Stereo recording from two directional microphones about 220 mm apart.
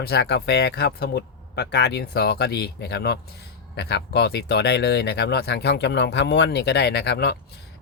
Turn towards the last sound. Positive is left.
turn(degrees=50)  # may be behind; listen again after turning